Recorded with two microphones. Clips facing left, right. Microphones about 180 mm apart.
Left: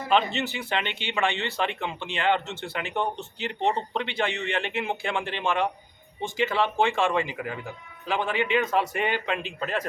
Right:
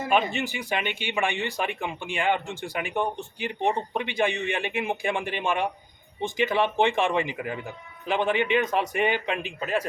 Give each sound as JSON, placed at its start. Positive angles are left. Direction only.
{"t": 0.3, "sound": "speech", "side_deg": -15}